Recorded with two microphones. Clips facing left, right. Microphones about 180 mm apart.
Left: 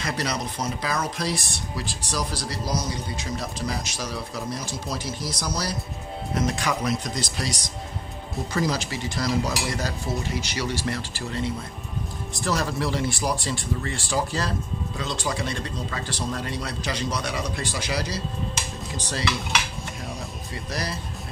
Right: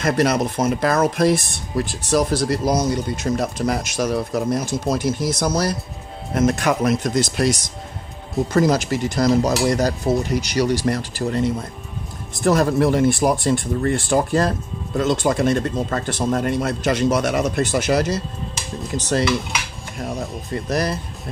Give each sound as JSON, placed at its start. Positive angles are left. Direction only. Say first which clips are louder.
{"t": 0.0, "sound": "speech", "louder": "right 10 dB", "side_deg": -50}
{"t": 8.5, "sound": "speech", "louder": "right 8 dB", "side_deg": -50}
{"t": 20.5, "sound": "speech", "louder": "right 10 dB", "side_deg": -50}